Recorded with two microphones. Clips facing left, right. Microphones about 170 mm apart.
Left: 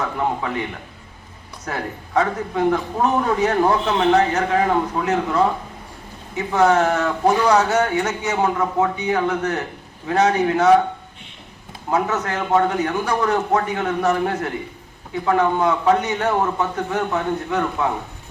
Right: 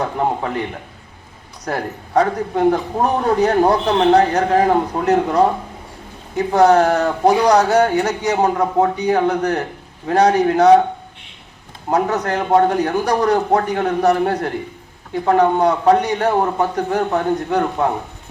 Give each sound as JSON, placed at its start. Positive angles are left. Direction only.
{"t": 0.0, "sound": "speech", "side_deg": -35}
{"t": 1.6, "sound": "speech", "side_deg": -35}
{"t": 11.9, "sound": "speech", "side_deg": -35}